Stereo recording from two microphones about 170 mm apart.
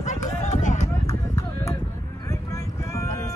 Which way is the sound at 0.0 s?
45° left (ahead or behind).